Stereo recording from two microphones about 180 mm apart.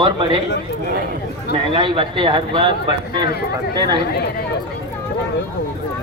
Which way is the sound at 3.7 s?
25° right (ahead or behind).